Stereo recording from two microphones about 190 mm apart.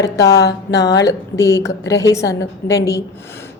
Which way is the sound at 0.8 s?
20° left (ahead or behind).